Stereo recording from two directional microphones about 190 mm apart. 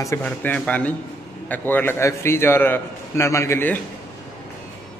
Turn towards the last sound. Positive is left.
turn(degrees=10)  # may be behind; listen again after turning